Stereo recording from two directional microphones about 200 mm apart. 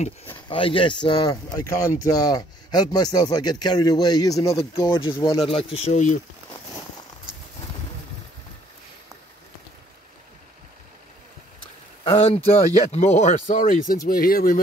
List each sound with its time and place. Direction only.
0.5 s speech: 25° left (ahead or behind)
12.0 s speech: 30° left (ahead or behind); by 14.6 s 45° left (ahead or behind)